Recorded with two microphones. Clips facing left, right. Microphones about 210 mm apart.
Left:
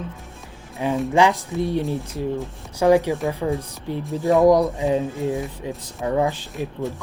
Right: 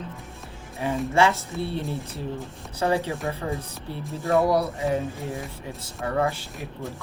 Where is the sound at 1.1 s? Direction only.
15° left (ahead or behind).